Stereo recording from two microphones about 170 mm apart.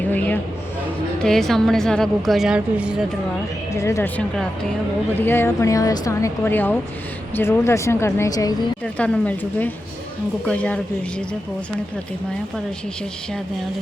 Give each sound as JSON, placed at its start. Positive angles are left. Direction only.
{"t": 1.2, "sound": "a woman's voice", "side_deg": 5}
{"t": 3.8, "sound": "speech", "side_deg": 15}
{"t": 5.2, "sound": "speech", "side_deg": 15}
{"t": 8.8, "sound": "speech", "side_deg": 5}